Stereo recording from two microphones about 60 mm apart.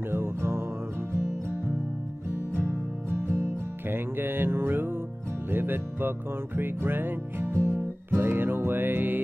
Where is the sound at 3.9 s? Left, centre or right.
Right.